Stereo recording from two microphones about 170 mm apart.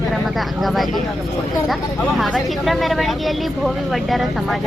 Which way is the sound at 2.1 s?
Centre (ahead or behind).